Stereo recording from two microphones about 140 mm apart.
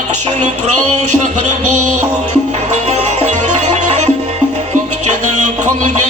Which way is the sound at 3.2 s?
55° right (ahead or behind).